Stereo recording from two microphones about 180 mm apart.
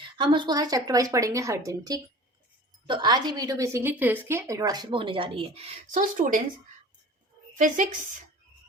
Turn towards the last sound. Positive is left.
turn(degrees=-45)  # may be behind; listen again after turning